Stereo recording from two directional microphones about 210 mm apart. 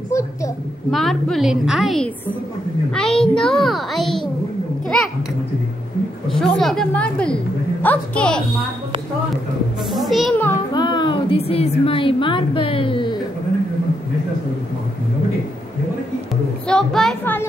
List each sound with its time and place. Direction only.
0.1 s a woman's voice: 15° left (ahead or behind)
0.9 s a child's voice: centre (ahead or behind)
6.2 s a child's voice: centre (ahead or behind)
9.8 s a child's voice: centre (ahead or behind)
10.7 s a woman's voice: 20° left (ahead or behind)
16.6 s a child's voice: 5° left (ahead or behind)